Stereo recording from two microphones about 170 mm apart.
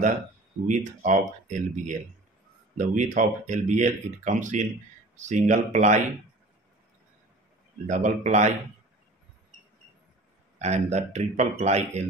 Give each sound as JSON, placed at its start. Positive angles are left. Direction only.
{"t": 0.7, "sound": "speech", "side_deg": -45}
{"t": 7.8, "sound": "speech", "side_deg": -45}
{"t": 10.6, "sound": "a man's voice", "side_deg": -40}